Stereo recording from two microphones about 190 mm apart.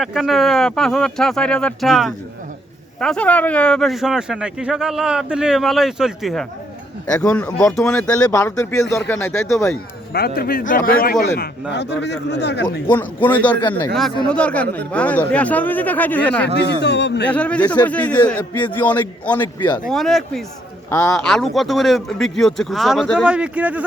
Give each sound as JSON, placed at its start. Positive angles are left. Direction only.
{"t": 0.0, "sound": "speech", "side_deg": 0}
{"t": 8.3, "sound": "speech", "side_deg": 15}
{"t": 10.1, "sound": "a man's voice", "side_deg": 55}
{"t": 11.7, "sound": "speech", "side_deg": 65}
{"t": 12.9, "sound": "speech", "side_deg": 10}
{"t": 16.8, "sound": "speech", "side_deg": 65}
{"t": 17.2, "sound": "speech", "side_deg": 5}
{"t": 19.5, "sound": "speech", "side_deg": 25}
{"t": 19.9, "sound": "speech", "side_deg": 0}